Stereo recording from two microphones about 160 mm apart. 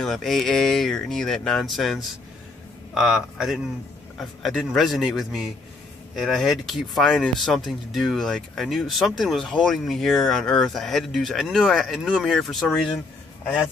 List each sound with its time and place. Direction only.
0.0 s speech: centre (ahead or behind)